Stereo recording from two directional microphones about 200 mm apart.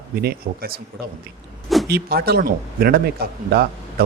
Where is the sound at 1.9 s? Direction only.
50° right (ahead or behind).